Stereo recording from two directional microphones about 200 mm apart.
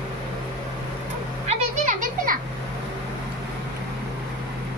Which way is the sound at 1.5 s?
40° right (ahead or behind).